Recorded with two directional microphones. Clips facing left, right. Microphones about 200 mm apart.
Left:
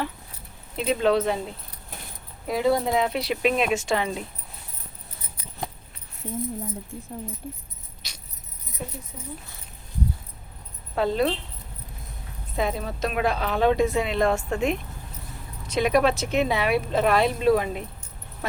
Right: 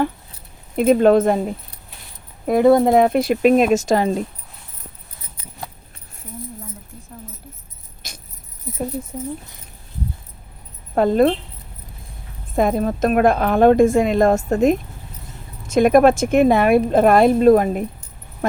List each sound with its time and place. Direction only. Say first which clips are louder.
0.8 s speech: right 9 dB; 50° right (ahead or behind)
8.0 s a sound: right 7 dB; 50° right (ahead or behind)
10.9 s speech: right 8 dB; 50° right (ahead or behind)
12.5 s speech: right 9 dB; 50° right (ahead or behind)